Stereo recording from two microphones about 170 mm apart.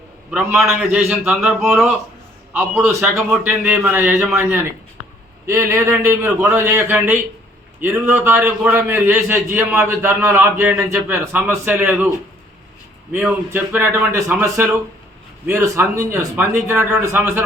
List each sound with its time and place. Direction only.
0.3 s a man's voice: 5° right (ahead or behind)
5.5 s a man's voice: 15° right (ahead or behind)
13.1 s a man's voice: 10° right (ahead or behind)